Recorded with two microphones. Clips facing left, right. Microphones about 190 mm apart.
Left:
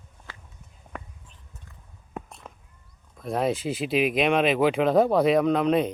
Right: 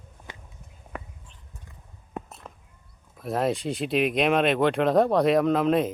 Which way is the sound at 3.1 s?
5° right (ahead or behind).